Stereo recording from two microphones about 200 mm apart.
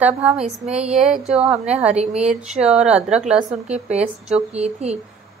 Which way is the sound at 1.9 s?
30° right (ahead or behind).